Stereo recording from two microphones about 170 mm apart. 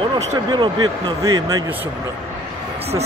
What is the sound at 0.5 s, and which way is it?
Speech, 25° right (ahead or behind).